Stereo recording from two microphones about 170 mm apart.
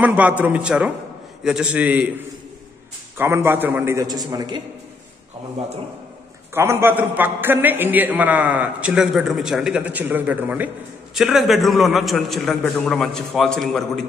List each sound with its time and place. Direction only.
0.0 s a man's voice: 10° right (ahead or behind)
6.5 s a man's voice: 15° right (ahead or behind); by 14.0 s centre (ahead or behind)